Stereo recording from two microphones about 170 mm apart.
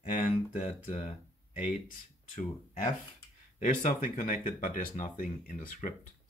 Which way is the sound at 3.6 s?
45° left (ahead or behind).